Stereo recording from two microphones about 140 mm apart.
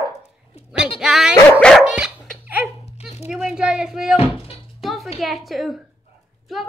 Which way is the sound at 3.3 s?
5° right (ahead or behind).